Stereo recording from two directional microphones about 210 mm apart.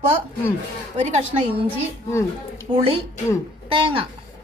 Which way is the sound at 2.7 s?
25° right (ahead or behind).